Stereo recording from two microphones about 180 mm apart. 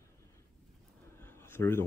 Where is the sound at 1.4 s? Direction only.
15° left (ahead or behind).